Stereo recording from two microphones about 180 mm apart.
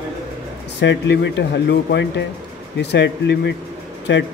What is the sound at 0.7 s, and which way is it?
Speech, 75° left (ahead or behind).